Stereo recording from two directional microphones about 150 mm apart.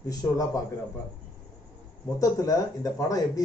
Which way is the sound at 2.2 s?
25° left (ahead or behind).